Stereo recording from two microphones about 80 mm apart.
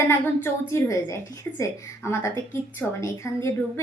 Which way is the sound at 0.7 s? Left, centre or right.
Left.